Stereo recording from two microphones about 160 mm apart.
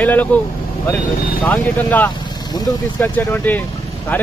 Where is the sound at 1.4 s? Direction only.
10° left (ahead or behind).